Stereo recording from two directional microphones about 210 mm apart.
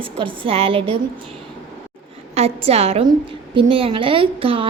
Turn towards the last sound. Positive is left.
turn(degrees=-25)  # may be behind; listen again after turning